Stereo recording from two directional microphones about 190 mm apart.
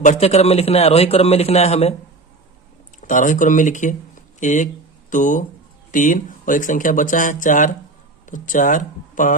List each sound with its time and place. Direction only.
0.0 s a man's voice: 40° left (ahead or behind)
3.0 s a man's voice: 40° left (ahead or behind)